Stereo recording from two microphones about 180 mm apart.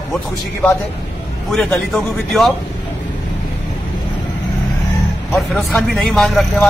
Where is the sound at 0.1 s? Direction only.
5° left (ahead or behind).